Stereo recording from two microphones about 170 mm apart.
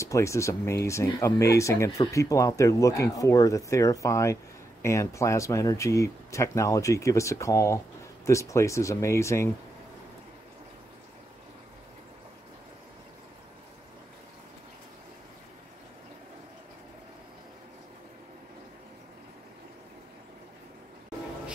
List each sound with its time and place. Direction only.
0.0 s speech: 15° left (ahead or behind)